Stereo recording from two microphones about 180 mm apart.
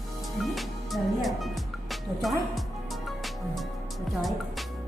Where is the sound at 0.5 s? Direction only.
Centre (ahead or behind).